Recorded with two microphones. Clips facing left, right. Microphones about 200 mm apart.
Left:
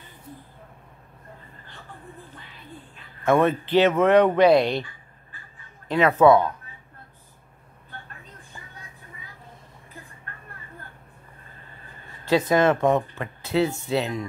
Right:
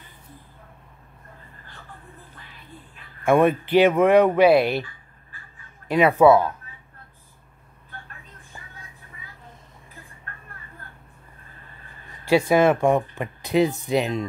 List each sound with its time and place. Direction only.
3.3 s speech: 10° right (ahead or behind)
5.9 s speech: 10° right (ahead or behind)
12.3 s speech: 10° right (ahead or behind)